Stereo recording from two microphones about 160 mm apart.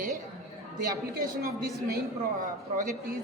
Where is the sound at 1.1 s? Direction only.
70° right (ahead or behind).